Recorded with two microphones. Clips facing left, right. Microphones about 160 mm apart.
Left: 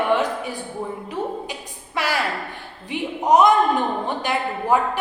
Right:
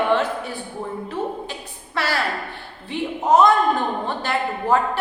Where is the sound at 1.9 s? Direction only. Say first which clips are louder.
Even; 15° left (ahead or behind).